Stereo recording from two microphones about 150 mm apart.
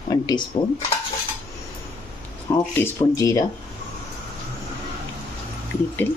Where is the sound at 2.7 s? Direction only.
20° left (ahead or behind).